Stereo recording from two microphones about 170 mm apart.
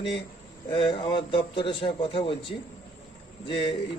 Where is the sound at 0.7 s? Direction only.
30° left (ahead or behind).